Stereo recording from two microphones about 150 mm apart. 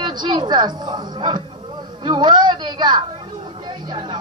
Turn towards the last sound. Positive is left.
turn(degrees=-30)  # may be behind; listen again after turning